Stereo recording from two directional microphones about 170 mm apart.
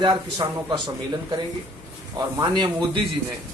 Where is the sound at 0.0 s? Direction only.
25° right (ahead or behind).